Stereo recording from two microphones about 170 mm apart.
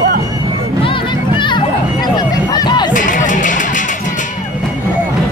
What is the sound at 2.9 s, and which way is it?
Music, 50° left (ahead or behind).